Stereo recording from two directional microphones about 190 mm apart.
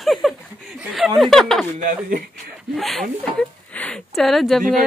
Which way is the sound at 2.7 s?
Centre (ahead or behind).